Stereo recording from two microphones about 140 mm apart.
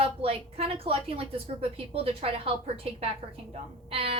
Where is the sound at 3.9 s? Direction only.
45° right (ahead or behind).